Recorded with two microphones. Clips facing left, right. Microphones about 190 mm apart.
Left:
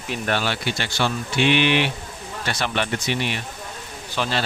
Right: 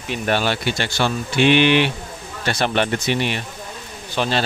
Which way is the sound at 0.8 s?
50° right (ahead or behind).